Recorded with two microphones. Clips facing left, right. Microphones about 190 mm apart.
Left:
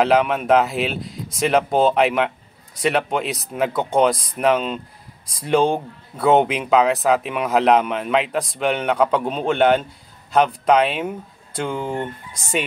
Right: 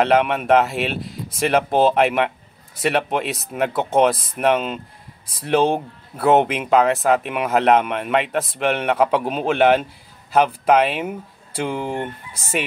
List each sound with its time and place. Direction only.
0.0 s speech: centre (ahead or behind)